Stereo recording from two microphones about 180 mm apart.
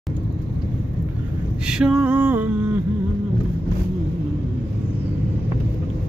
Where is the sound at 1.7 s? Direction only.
5° right (ahead or behind).